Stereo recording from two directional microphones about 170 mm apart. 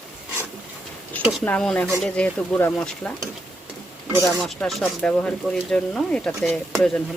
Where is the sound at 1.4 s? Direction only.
5° left (ahead or behind).